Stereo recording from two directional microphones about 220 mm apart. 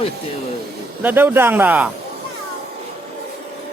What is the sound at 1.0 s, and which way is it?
Speech, 10° right (ahead or behind).